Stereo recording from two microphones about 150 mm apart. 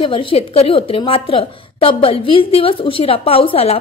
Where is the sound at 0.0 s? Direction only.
35° left (ahead or behind).